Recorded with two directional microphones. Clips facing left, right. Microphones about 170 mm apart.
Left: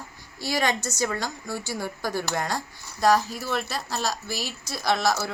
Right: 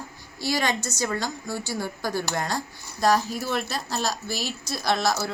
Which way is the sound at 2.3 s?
15° left (ahead or behind).